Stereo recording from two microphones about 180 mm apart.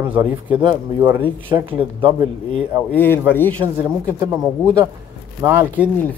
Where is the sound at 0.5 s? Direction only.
25° right (ahead or behind).